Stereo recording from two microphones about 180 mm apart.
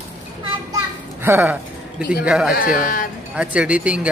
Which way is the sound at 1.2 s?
15° right (ahead or behind).